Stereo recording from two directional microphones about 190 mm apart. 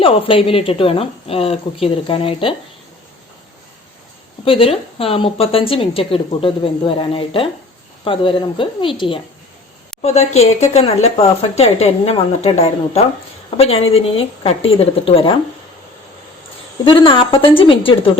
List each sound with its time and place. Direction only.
0.0 s a woman's voice: 30° left (ahead or behind)
4.4 s a woman's voice: 30° left (ahead or behind)
16.8 s a woman's voice: 25° left (ahead or behind)